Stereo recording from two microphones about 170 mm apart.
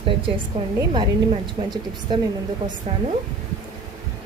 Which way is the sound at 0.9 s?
25° right (ahead or behind).